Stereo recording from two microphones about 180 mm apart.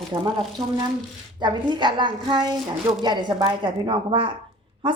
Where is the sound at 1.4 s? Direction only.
25° right (ahead or behind).